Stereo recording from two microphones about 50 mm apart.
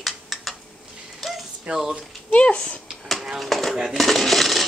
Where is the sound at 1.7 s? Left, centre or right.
Centre.